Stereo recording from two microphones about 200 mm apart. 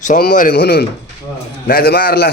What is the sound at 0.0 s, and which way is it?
Speech, 40° left (ahead or behind).